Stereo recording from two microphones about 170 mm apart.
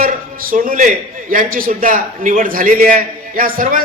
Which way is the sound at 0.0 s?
55° right (ahead or behind).